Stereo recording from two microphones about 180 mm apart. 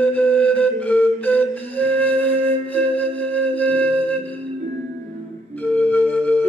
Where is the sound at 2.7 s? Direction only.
10° left (ahead or behind).